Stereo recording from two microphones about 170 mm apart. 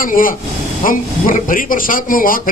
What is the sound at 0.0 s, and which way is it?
A man's voice, 55° left (ahead or behind).